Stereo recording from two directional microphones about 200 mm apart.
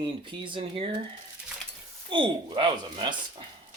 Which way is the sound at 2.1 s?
25° right (ahead or behind).